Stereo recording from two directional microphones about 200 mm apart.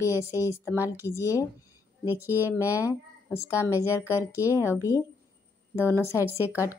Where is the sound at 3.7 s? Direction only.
15° left (ahead or behind).